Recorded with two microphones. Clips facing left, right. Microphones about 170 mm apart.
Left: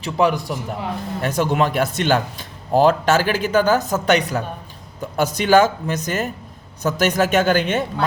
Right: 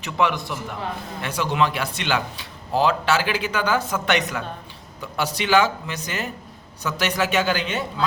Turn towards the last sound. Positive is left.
turn(degrees=50)  # may be behind; listen again after turning